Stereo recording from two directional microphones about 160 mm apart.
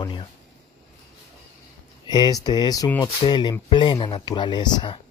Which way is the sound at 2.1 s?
25° left (ahead or behind).